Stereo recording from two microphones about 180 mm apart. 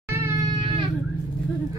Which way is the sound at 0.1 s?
15° right (ahead or behind).